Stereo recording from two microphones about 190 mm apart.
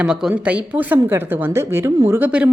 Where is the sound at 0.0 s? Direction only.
5° right (ahead or behind).